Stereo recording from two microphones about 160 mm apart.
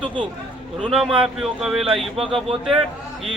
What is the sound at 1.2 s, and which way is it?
Speech, centre (ahead or behind).